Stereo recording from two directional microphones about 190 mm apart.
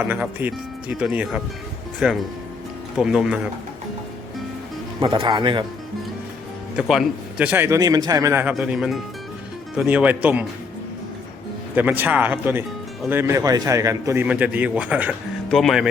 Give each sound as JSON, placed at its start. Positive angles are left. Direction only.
{"t": 0.0, "sound": "speech", "side_deg": -10}
{"t": 4.9, "sound": "speech", "side_deg": -25}
{"t": 6.7, "sound": "speech", "side_deg": 0}
{"t": 11.7, "sound": "speech", "side_deg": -10}